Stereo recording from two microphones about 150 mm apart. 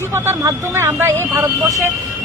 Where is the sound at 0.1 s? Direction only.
15° right (ahead or behind).